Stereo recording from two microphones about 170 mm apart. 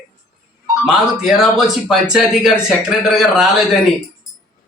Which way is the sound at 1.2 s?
Centre (ahead or behind).